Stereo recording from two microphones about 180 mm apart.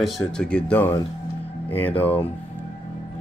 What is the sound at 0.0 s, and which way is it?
Speech, 5° left (ahead or behind).